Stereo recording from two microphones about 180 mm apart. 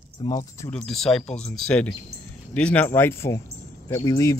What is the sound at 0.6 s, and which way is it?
Speech, 5° left (ahead or behind).